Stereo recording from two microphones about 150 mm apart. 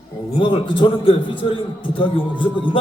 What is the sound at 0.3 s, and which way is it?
A man's voice, 35° left (ahead or behind).